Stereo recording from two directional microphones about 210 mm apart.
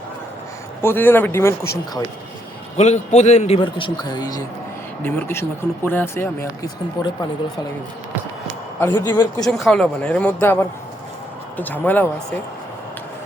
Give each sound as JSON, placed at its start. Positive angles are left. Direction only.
{"t": 0.9, "sound": "speech", "side_deg": 10}
{"t": 2.7, "sound": "a man's voice", "side_deg": 30}
{"t": 8.9, "sound": "speech", "side_deg": 20}
{"t": 9.5, "sound": "a man's voice", "side_deg": 0}